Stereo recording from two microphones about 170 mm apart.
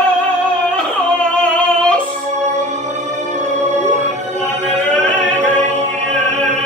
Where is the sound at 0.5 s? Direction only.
5° left (ahead or behind).